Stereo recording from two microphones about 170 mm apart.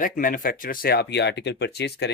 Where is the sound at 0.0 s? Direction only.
55° left (ahead or behind).